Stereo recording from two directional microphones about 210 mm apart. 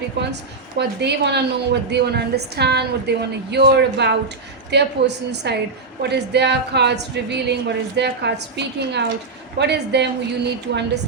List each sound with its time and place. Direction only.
0.2 s a woman's voice: 55° right (ahead or behind)